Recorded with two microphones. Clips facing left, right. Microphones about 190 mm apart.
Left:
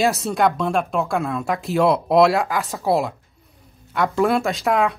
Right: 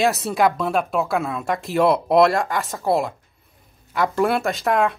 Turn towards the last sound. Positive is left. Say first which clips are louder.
# even
turn(degrees=0)  # may be behind; listen again after turning